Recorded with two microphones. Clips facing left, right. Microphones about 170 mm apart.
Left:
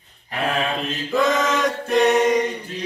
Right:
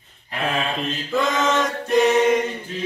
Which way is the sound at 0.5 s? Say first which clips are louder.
Even; centre (ahead or behind).